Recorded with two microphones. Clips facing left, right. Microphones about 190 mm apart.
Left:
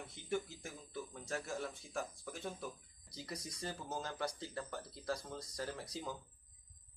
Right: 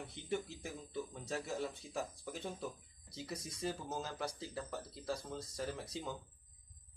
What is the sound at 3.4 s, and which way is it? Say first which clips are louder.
Speech: right 1 dB; 30° right (ahead or behind).